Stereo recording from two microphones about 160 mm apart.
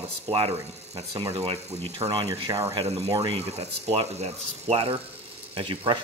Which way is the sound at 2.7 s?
40° right (ahead or behind).